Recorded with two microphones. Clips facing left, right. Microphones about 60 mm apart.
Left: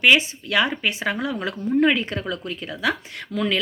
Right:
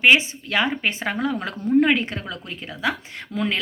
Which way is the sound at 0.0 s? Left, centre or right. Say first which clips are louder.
Right 1 dB; right.